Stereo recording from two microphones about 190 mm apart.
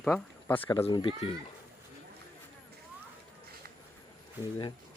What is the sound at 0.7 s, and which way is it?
Speech, 25° left (ahead or behind).